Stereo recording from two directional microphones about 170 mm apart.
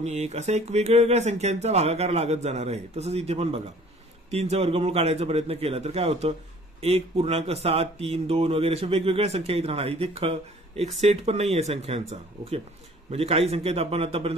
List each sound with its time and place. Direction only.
0.0 s speech: 40° right (ahead or behind)